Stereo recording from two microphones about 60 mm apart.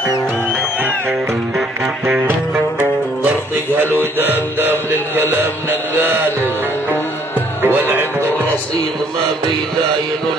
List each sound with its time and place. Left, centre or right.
3.7 s music: right
7.6 s music: right